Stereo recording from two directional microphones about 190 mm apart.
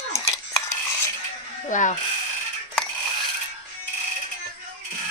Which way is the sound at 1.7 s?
40° left (ahead or behind).